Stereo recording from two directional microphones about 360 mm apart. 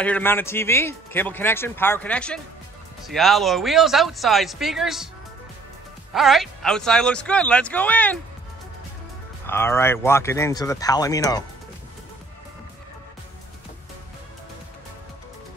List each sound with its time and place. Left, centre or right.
0.0 s speech: centre
6.1 s speech: centre
9.5 s speech: centre